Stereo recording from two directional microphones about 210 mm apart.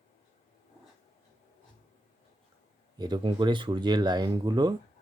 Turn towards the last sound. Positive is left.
turn(degrees=-20)  # may be behind; listen again after turning